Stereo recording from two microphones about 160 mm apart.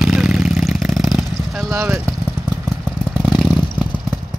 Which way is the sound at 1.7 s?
15° right (ahead or behind).